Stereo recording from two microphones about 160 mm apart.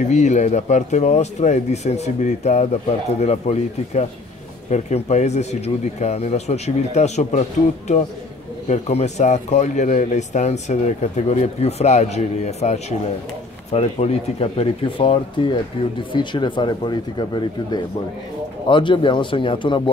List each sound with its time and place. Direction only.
0.1 s speech: 45° left (ahead or behind)
8.6 s speech: 45° left (ahead or behind)